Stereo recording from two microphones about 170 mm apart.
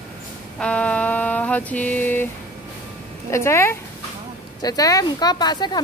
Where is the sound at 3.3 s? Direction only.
15° left (ahead or behind).